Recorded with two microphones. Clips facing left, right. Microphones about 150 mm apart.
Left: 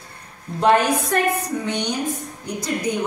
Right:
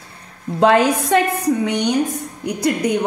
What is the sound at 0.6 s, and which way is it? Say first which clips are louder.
Speech: right 3 dB; 90° right.